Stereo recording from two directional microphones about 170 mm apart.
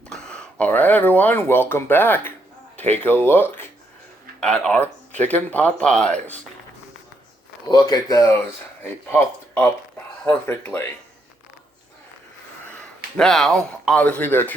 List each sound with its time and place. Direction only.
0.1 s speech: 5° left (ahead or behind)
7.7 s speech: 25° left (ahead or behind)
13.1 s speech: 5° left (ahead or behind)